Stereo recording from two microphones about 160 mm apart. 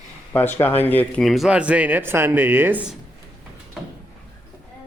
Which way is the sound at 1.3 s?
5° right (ahead or behind).